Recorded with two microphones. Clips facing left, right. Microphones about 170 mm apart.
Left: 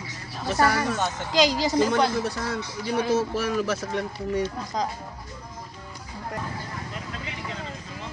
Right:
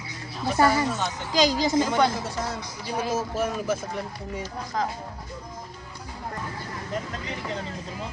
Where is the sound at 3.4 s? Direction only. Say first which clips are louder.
Left 1 dB; 75° left (ahead or behind).